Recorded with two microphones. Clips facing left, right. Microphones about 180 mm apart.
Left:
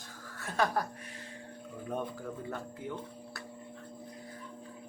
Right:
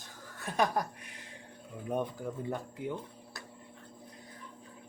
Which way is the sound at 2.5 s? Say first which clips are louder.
Right 3 dB; 15° right (ahead or behind).